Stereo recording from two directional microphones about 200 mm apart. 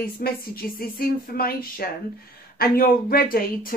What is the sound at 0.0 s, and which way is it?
Speech, 45° left (ahead or behind).